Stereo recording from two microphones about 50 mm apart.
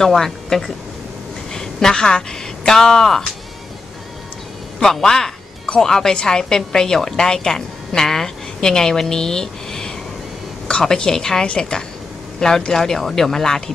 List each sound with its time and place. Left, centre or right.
0.0 s a woman's voice: centre
5.0 s a woman's voice: centre